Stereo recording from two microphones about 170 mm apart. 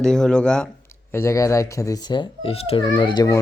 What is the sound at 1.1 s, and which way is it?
A child's voice, 15° left (ahead or behind).